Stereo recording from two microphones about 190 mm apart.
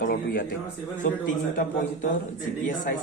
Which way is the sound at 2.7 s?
45° left (ahead or behind).